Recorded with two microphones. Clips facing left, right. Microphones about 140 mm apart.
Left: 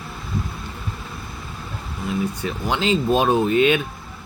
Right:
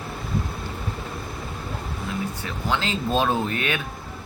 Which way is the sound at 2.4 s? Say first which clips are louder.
Left 3 dB; 20° left (ahead or behind).